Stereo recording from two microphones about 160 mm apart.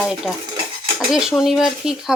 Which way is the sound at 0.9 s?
5° right (ahead or behind).